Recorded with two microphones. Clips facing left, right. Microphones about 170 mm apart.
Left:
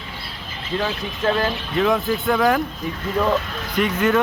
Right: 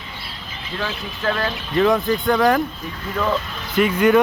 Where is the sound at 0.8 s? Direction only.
25° left (ahead or behind).